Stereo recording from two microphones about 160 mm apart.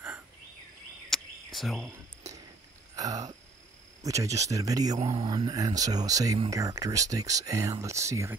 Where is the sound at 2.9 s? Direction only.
20° right (ahead or behind).